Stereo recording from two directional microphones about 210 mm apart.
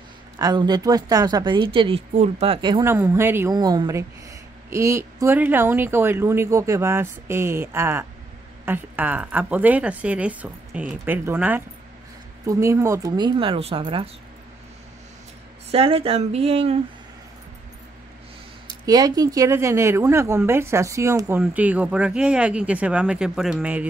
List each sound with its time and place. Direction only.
0.4 s a woman's voice: 20° right (ahead or behind)
15.7 s speech: 30° right (ahead or behind)
18.9 s a woman's voice: 20° right (ahead or behind)